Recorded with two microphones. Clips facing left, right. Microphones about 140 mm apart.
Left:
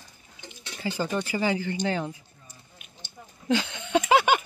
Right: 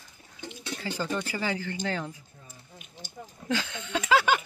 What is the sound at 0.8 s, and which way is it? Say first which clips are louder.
Speech: left 4 dB; 15° left (ahead or behind).